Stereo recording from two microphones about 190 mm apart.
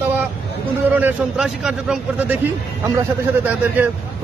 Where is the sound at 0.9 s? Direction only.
5° right (ahead or behind).